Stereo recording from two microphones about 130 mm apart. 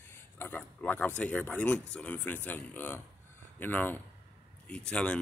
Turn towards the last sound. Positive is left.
turn(degrees=5)  # may be behind; listen again after turning